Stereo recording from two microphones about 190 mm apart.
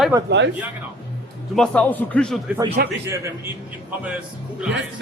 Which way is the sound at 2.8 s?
55° right (ahead or behind).